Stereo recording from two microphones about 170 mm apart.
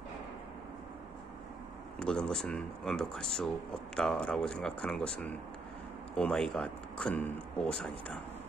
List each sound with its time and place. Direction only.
2.0 s speech: 5° left (ahead or behind)